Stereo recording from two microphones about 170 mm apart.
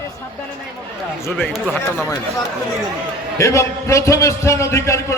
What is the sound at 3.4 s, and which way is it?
A man's voice, 15° left (ahead or behind).